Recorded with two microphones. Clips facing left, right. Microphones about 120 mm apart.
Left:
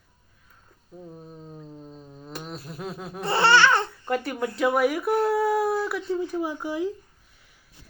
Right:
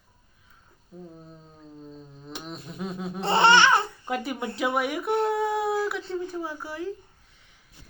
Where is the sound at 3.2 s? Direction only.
20° right (ahead or behind); by 6.2 s centre (ahead or behind).